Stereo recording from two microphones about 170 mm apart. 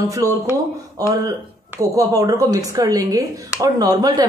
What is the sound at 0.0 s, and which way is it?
Speech, 20° right (ahead or behind).